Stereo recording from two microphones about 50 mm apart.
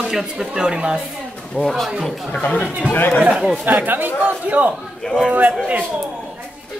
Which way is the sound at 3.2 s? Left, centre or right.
Centre.